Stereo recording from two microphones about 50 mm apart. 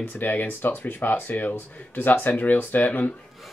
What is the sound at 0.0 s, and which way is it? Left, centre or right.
Speech, left.